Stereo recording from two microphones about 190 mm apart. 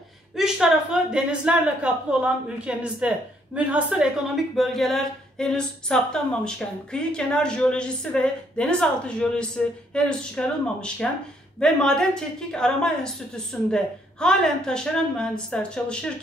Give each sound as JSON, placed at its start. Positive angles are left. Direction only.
{"t": 0.4, "sound": "a woman's voice", "side_deg": -5}